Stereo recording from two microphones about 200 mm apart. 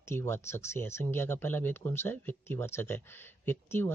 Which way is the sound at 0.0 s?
15° left (ahead or behind).